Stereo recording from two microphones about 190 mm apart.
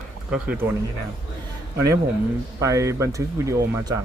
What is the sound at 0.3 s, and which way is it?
Speech, 5° right (ahead or behind).